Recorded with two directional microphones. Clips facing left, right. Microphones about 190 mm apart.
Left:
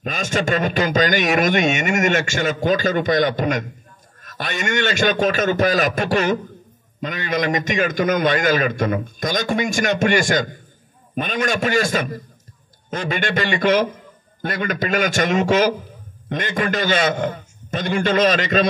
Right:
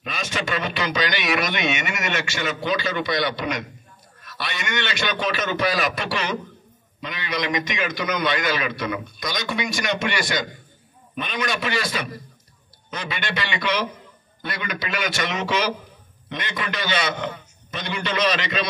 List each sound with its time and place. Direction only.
0.0 s a man's voice: 45° left (ahead or behind)